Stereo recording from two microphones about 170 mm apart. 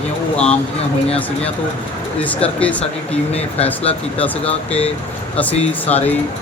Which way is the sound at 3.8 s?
10° left (ahead or behind).